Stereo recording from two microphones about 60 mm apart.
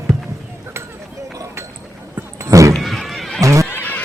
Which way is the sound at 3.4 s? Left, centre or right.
Right.